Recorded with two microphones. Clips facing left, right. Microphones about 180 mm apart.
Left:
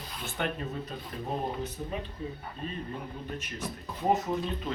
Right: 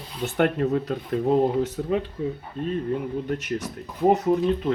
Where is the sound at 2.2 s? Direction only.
70° right (ahead or behind).